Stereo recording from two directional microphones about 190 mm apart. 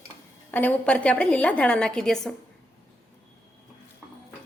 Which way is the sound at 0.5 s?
10° left (ahead or behind).